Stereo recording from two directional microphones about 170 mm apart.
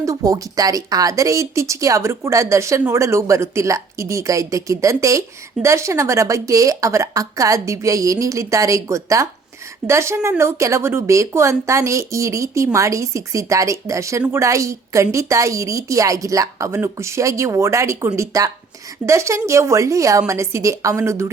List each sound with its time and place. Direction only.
0.0 s a woman's voice: 20° right (ahead or behind)